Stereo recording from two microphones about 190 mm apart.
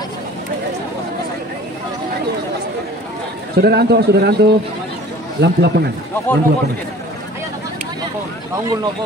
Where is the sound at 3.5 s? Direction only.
55° right (ahead or behind).